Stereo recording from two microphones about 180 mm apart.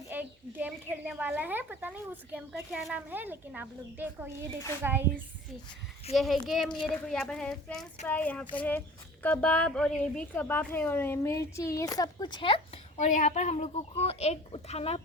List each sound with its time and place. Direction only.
0.1 s speech: 10° right (ahead or behind)
6.1 s a woman's voice: centre (ahead or behind); by 13.1 s 30° left (ahead or behind)
13.1 s speech: 45° left (ahead or behind)